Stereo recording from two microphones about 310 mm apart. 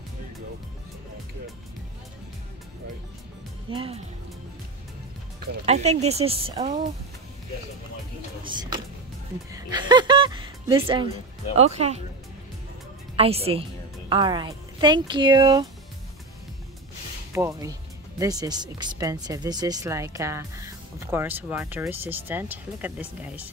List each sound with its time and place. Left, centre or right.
3.7 s speech: centre
5.7 s speech: right
8.5 s speech: centre
13.1 s a woman's voice: centre
17.3 s speech: centre